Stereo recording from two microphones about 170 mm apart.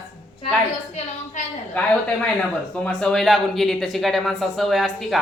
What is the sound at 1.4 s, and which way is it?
Speech, 45° left (ahead or behind).